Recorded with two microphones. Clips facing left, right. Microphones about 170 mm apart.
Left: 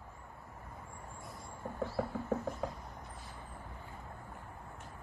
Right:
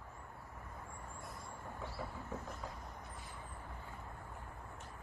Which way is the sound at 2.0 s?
60° left (ahead or behind).